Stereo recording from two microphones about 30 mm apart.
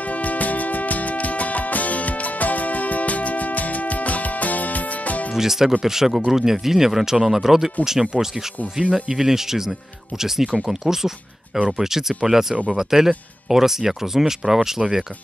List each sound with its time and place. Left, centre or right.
0.1 s music: left
5.3 s speech: centre